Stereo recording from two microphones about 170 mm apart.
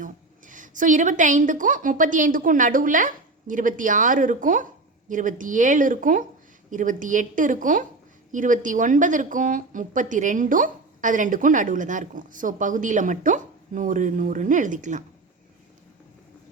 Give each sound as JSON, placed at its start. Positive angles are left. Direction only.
{"t": 0.0, "sound": "a woman's voice", "side_deg": -50}